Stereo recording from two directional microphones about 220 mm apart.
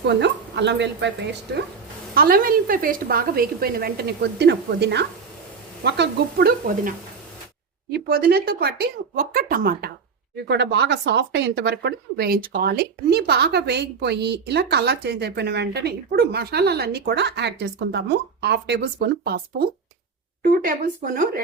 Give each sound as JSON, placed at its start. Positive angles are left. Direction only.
{"t": 0.1, "sound": "speech", "side_deg": -50}